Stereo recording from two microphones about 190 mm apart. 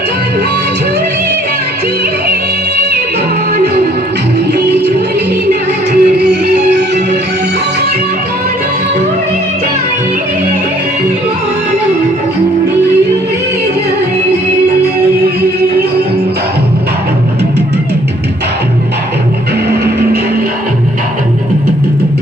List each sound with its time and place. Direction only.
4.5 s music: 60° right (ahead or behind)